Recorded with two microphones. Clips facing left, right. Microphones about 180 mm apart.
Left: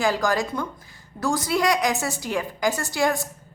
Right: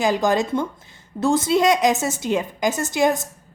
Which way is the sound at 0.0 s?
20° right (ahead or behind).